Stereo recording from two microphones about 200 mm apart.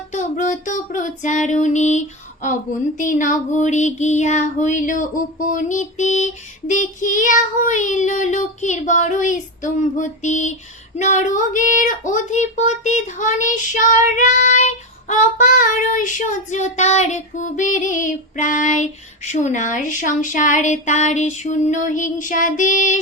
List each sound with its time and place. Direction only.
0.1 s music: 40° left (ahead or behind)
3.0 s speech: 40° left (ahead or behind)